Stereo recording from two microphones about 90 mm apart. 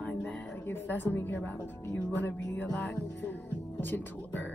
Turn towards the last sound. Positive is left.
turn(degrees=20)  # may be behind; listen again after turning